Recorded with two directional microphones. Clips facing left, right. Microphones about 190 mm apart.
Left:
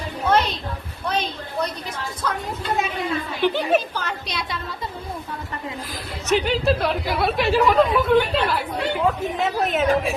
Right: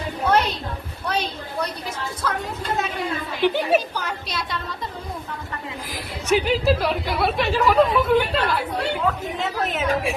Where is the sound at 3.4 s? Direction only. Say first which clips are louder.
Right 1 dB; 10° right (ahead or behind).